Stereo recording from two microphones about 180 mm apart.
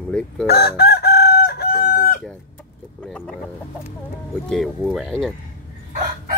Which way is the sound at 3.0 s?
5° left (ahead or behind).